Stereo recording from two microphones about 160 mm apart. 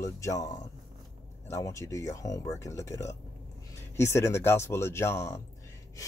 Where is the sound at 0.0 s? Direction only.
20° left (ahead or behind).